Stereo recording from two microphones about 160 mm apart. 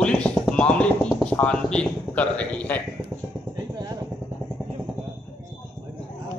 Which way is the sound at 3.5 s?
25° right (ahead or behind).